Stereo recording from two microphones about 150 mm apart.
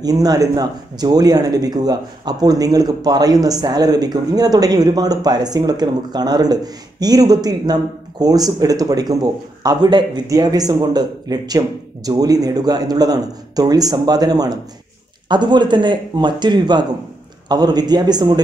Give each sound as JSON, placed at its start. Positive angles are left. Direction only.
{"t": 0.0, "sound": "speech", "side_deg": -25}